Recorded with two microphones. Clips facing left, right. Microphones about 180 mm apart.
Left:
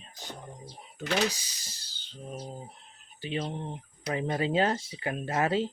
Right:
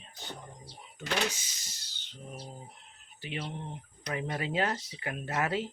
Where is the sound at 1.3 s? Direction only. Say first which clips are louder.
Left 3 dB; 35° left (ahead or behind).